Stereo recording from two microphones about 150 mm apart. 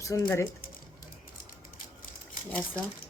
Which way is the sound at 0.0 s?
20° left (ahead or behind).